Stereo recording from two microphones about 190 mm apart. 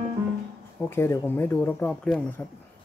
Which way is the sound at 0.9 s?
10° left (ahead or behind).